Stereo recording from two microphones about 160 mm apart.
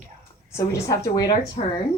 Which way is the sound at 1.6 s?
40° left (ahead or behind).